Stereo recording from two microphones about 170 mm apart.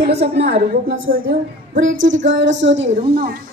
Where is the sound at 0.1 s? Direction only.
70° right (ahead or behind).